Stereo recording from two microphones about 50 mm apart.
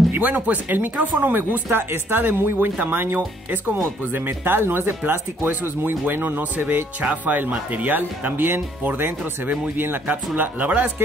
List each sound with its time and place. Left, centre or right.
0.1 s speech: right
7.0 s speech: right